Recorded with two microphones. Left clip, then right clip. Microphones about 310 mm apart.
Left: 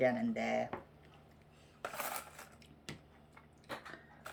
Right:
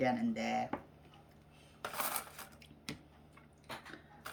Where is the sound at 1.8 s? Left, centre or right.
Centre.